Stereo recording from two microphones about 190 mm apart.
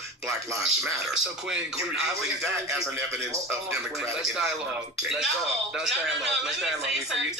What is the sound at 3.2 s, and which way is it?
Speech, 15° right (ahead or behind).